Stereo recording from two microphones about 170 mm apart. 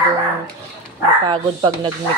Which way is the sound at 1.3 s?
25° right (ahead or behind).